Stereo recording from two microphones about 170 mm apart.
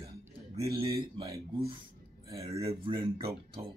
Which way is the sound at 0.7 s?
30° right (ahead or behind).